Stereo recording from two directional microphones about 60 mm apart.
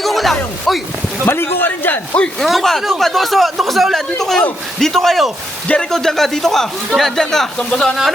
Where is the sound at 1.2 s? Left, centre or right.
Left.